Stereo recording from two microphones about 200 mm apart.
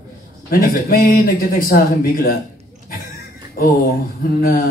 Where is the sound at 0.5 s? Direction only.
45° left (ahead or behind).